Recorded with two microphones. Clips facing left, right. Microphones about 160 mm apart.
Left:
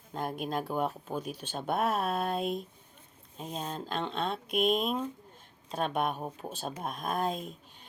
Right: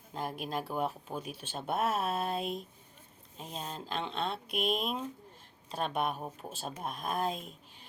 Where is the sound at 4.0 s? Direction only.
40° left (ahead or behind).